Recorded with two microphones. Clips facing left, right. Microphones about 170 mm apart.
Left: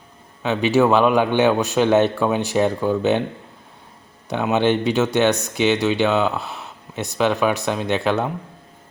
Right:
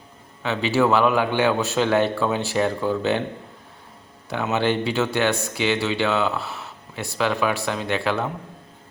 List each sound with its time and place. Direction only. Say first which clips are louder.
0.4 s speech: left 4 dB; 15° left (ahead or behind)
4.3 s speech: left 4 dB; 20° left (ahead or behind)